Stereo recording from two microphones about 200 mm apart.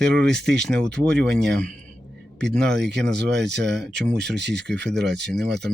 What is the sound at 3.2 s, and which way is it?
Speech, 60° right (ahead or behind).